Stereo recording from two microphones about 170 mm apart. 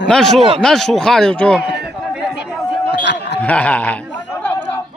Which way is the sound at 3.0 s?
90° left.